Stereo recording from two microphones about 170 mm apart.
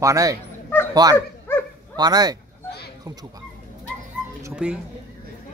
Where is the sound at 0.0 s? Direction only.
20° right (ahead or behind).